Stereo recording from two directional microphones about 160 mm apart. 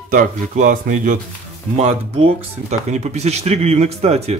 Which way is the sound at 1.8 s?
40° right (ahead or behind).